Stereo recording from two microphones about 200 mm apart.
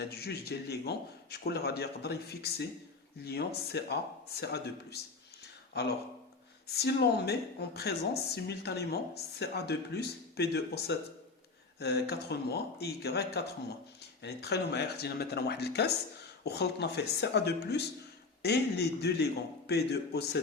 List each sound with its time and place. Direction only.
0.0 s a man's voice: 55° left (ahead or behind)
6.7 s a woman's voice: 55° left (ahead or behind)